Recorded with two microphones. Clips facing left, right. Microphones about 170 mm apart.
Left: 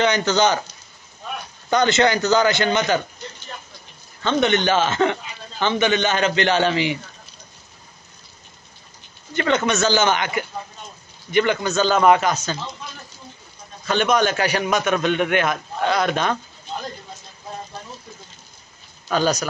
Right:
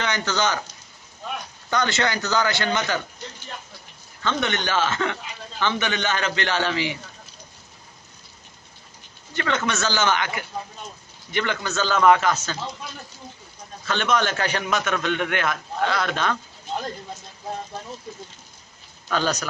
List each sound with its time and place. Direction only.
0.0 s a man's voice: 20° left (ahead or behind)
1.7 s a man's voice: 20° left (ahead or behind)
4.2 s a man's voice: 20° left (ahead or behind)
9.3 s a man's voice: 20° left (ahead or behind)
13.8 s a man's voice: 15° left (ahead or behind)
19.0 s a man's voice: 15° left (ahead or behind)